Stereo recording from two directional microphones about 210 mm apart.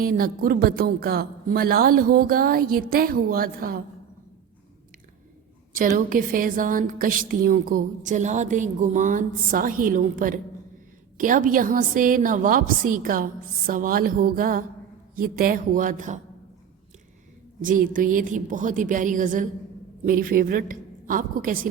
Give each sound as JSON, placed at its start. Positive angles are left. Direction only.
{"t": 0.0, "sound": "a woman's voice", "side_deg": -45}
{"t": 5.7, "sound": "a woman's voice", "side_deg": -40}
{"t": 17.6, "sound": "a woman's voice", "side_deg": -40}